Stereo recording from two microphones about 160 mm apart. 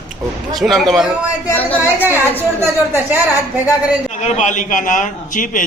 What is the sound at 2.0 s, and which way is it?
Speech, 10° right (ahead or behind).